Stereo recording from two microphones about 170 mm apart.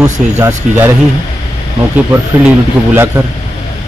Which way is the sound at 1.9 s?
10° right (ahead or behind).